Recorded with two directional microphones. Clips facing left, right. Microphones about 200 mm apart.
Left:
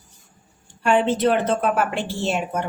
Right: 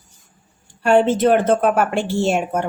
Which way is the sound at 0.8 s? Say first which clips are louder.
Right 4 dB; 45° right (ahead or behind).